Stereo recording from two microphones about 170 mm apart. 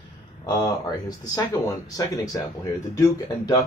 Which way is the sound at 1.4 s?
20° left (ahead or behind).